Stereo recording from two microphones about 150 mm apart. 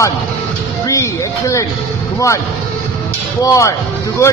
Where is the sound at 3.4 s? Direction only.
20° left (ahead or behind).